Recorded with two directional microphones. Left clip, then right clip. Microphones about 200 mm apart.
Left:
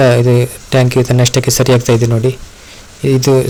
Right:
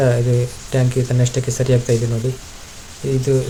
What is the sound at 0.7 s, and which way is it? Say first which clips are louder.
Speech: left 9 dB; 55° left (ahead or behind).